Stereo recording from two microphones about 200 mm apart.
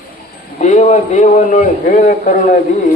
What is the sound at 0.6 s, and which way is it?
A man's voice, 35° left (ahead or behind).